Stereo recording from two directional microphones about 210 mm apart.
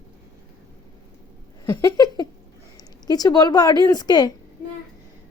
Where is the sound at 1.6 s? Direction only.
15° left (ahead or behind).